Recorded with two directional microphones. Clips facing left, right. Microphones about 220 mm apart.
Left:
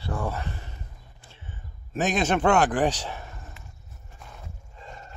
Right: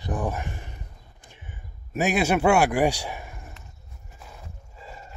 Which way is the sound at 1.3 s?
10° right (ahead or behind).